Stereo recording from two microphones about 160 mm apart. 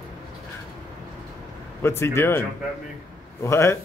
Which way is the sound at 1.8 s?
15° left (ahead or behind).